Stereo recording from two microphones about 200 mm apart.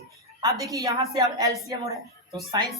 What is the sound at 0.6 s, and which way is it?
A woman's voice, 15° right (ahead or behind).